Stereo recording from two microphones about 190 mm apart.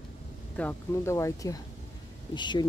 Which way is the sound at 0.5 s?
10° left (ahead or behind).